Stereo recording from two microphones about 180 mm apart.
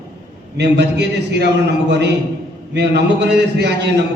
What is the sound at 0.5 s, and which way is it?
Speech, 70° right (ahead or behind).